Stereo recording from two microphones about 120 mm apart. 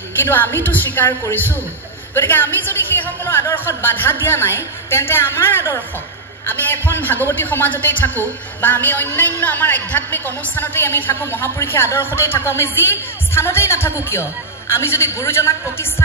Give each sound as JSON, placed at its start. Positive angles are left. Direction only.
{"t": 0.3, "sound": "a man's voice", "side_deg": 20}